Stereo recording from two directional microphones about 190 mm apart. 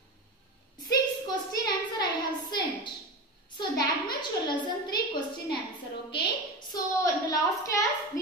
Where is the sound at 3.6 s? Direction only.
25° left (ahead or behind).